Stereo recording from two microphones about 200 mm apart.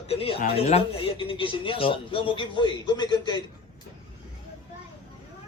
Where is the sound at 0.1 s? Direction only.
30° left (ahead or behind).